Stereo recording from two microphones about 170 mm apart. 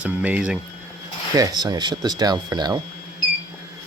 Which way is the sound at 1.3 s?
25° right (ahead or behind).